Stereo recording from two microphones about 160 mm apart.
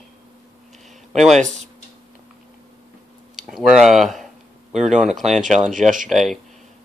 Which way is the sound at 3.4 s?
5° right (ahead or behind).